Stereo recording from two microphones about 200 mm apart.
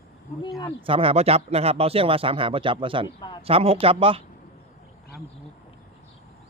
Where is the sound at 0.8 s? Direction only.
25° right (ahead or behind).